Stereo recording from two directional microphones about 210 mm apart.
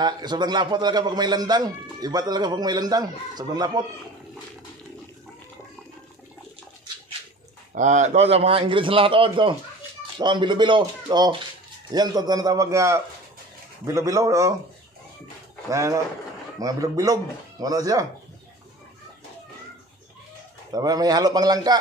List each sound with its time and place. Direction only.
0.0 s speech: 20° right (ahead or behind)
7.7 s speech: 35° right (ahead or behind); by 14.5 s 15° right (ahead or behind)
15.7 s speech: 15° right (ahead or behind)
20.7 s speech: 15° right (ahead or behind)